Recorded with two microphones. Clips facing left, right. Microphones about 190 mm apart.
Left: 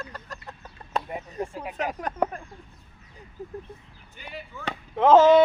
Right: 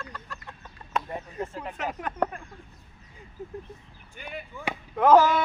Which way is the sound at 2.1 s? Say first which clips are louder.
Left 2 dB; 40° left (ahead or behind).